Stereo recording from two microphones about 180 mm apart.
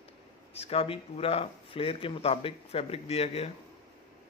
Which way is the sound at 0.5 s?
35° left (ahead or behind).